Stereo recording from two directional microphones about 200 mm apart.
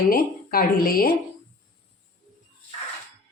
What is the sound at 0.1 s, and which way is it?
Speech, 50° left (ahead or behind).